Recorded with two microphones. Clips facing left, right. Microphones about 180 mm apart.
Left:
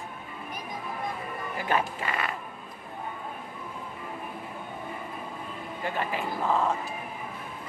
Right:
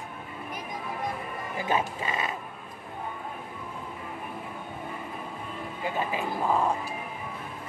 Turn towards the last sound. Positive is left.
turn(degrees=-15)  # may be behind; listen again after turning